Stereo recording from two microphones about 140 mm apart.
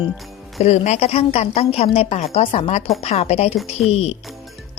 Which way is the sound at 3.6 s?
Centre (ahead or behind).